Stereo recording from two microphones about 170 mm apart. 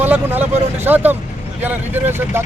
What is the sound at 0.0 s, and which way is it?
Speech, 10° right (ahead or behind).